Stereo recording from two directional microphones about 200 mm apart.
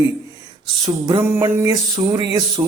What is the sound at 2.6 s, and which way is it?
Speech, 15° right (ahead or behind).